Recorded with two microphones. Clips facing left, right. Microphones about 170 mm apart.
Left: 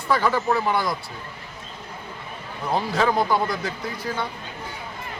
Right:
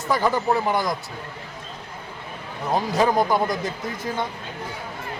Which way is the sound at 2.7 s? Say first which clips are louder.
Right 2 dB; 20° right (ahead or behind).